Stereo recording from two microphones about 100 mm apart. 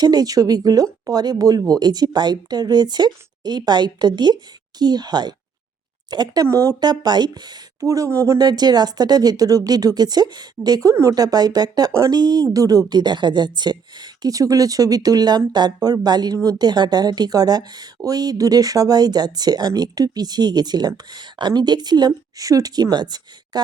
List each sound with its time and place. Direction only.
0.0 s a woman's voice: 40° right (ahead or behind)
7.0 s a woman's voice: 45° right (ahead or behind)